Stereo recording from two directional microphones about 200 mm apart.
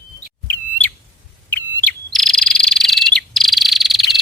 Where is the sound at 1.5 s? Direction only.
10° left (ahead or behind).